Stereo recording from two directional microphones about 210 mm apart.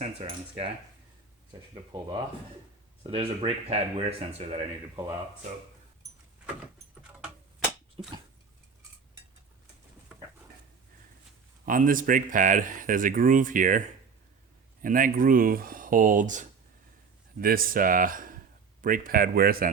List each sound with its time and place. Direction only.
0.0 s speech: 30° right (ahead or behind)
1.7 s speech: 20° right (ahead or behind)
11.6 s speech: 40° right (ahead or behind)